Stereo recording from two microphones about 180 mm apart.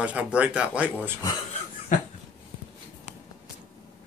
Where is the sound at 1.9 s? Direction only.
45° left (ahead or behind).